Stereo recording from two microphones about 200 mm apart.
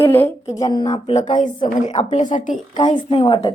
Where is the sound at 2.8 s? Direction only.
25° left (ahead or behind).